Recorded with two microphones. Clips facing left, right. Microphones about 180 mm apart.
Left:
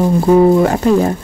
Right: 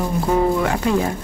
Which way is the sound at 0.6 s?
40° left (ahead or behind).